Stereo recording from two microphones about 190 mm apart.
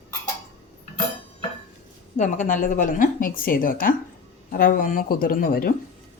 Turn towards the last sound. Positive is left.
turn(degrees=50)  # may be behind; listen again after turning